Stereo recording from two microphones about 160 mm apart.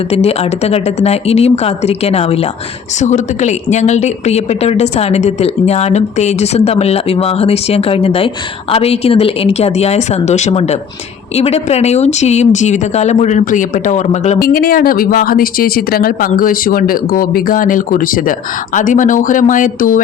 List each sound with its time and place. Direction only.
0.1 s a woman's voice: 40° left (ahead or behind)
14.3 s speech: 65° left (ahead or behind)